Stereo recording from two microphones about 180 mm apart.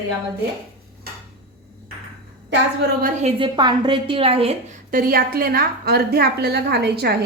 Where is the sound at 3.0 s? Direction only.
35° right (ahead or behind).